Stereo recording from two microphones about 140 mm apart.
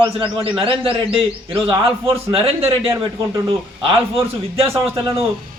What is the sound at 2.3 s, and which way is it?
Speech, 40° right (ahead or behind).